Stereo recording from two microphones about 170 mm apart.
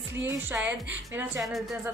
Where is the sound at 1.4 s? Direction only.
Centre (ahead or behind).